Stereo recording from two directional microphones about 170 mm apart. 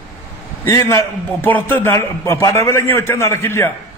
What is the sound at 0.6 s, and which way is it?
A man's voice, 15° left (ahead or behind).